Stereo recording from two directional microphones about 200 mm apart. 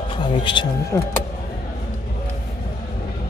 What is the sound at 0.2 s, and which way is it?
Speech, 25° left (ahead or behind).